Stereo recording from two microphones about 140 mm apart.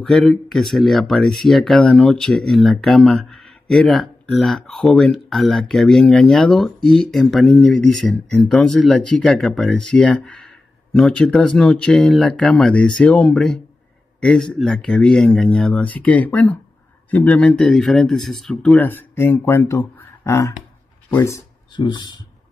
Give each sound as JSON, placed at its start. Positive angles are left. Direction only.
{"t": 0.0, "sound": "speech", "side_deg": 5}